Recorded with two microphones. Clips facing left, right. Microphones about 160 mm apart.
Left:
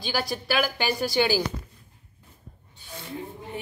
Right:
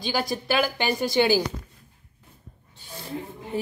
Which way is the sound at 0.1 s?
20° right (ahead or behind).